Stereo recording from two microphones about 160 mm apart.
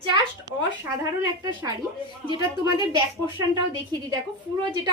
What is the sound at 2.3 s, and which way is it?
Speech, 30° right (ahead or behind).